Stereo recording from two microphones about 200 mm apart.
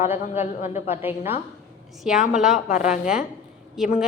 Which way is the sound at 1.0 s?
10° right (ahead or behind).